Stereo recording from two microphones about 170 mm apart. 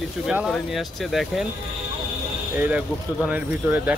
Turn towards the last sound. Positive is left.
turn(degrees=-10)  # may be behind; listen again after turning